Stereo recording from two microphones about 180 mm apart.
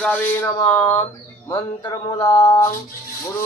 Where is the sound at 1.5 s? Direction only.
20° left (ahead or behind).